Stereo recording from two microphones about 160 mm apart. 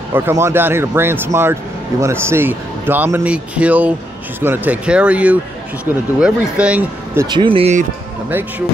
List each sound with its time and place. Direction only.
0.1 s a man's voice: 15° right (ahead or behind)
7.2 s speech: 30° right (ahead or behind)
8.3 s a man's voice: 10° right (ahead or behind)